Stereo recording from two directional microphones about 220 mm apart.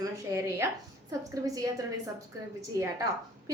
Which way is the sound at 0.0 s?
10° right (ahead or behind).